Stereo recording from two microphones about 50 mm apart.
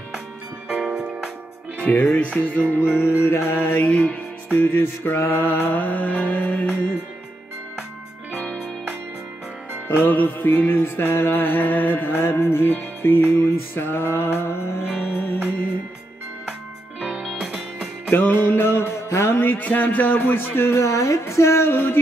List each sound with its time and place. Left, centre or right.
0.7 s music: centre
1.8 s music: left
3.2 s mantra: left
3.8 s music: left
9.8 s music: left
12.1 s music: left
15.0 s music: left
17.0 s music: centre
18.1 s music: left
19.4 s music: left
20.7 s a woman's voice: left
21.2 s speech: left
21.6 s music: left